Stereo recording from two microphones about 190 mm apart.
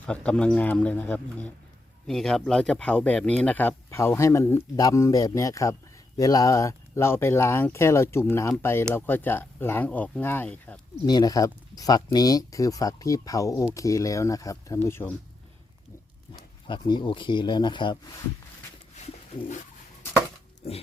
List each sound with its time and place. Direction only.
0.0 s speech: 5° left (ahead or behind)
11.0 s speech: 20° left (ahead or behind)
16.6 s speech: 25° left (ahead or behind)
18.9 s bird: 40° left (ahead or behind)